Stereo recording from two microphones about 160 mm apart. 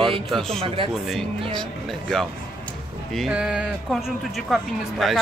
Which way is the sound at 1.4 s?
30° right (ahead or behind).